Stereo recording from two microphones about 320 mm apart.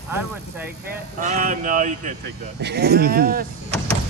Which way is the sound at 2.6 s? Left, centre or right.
Right.